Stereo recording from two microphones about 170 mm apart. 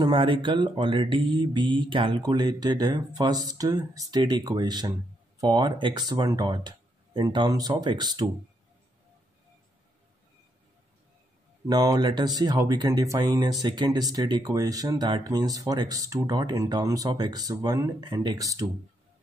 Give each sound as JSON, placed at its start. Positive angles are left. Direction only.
{"t": 0.0, "sound": "speech", "side_deg": -30}
{"t": 11.6, "sound": "speech", "side_deg": -20}